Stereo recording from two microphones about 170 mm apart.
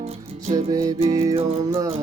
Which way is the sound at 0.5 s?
20° right (ahead or behind).